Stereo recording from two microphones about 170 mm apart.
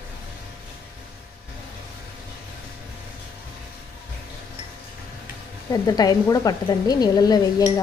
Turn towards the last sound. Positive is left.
turn(degrees=25)  # may be behind; listen again after turning